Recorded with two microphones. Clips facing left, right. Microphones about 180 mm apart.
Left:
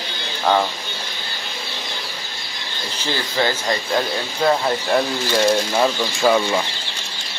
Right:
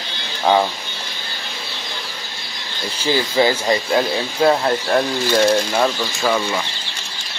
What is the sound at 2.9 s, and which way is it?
Speech, 10° right (ahead or behind).